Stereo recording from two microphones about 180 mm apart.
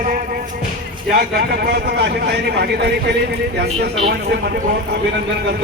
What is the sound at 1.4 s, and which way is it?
A man's voice, 60° right (ahead or behind).